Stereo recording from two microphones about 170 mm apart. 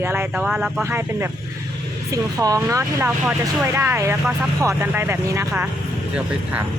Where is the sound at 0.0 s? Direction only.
15° right (ahead or behind).